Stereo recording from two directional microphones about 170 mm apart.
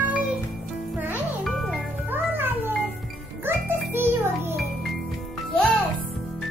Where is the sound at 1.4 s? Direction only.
Centre (ahead or behind).